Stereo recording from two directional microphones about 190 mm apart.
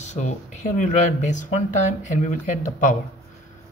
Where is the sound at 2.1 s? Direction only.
40° left (ahead or behind).